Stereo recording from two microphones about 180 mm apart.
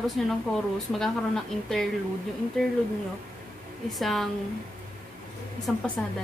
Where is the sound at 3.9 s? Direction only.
Centre (ahead or behind).